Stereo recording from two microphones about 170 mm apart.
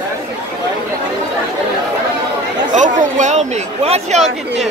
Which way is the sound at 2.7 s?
45° right (ahead or behind).